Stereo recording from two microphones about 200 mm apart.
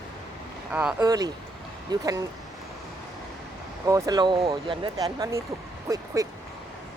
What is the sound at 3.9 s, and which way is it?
Speech, 20° right (ahead or behind).